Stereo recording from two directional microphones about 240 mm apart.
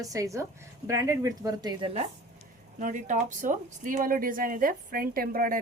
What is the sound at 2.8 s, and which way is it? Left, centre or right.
A woman's voice, right.